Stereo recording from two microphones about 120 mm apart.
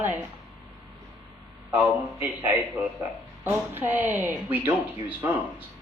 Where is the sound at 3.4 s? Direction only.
15° right (ahead or behind).